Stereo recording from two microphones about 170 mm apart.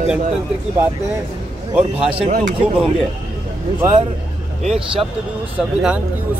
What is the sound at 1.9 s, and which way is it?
Speech, 35° right (ahead or behind).